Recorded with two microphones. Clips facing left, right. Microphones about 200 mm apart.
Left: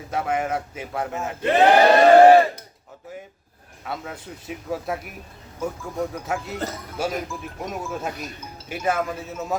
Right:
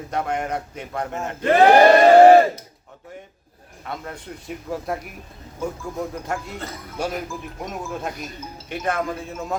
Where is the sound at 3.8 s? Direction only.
5° left (ahead or behind).